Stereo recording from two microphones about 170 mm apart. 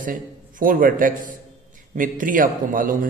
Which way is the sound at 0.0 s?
55° right (ahead or behind).